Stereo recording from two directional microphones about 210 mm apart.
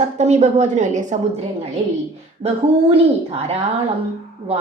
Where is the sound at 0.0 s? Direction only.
30° right (ahead or behind).